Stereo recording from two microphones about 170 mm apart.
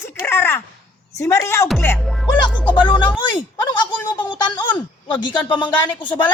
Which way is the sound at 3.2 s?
25° left (ahead or behind).